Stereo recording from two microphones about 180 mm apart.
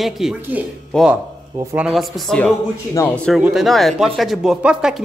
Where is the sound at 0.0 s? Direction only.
Centre (ahead or behind); by 1.9 s 15° right (ahead or behind).